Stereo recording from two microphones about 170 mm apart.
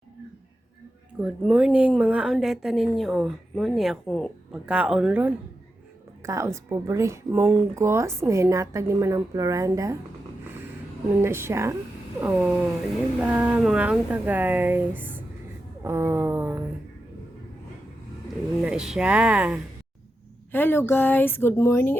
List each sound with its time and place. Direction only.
1.2 s speech: 5° right (ahead or behind)
6.2 s speech: 15° right (ahead or behind)
11.2 s speech: 15° right (ahead or behind)
18.6 s speech: 5° right (ahead or behind)
20.5 s a woman's voice: 10° left (ahead or behind)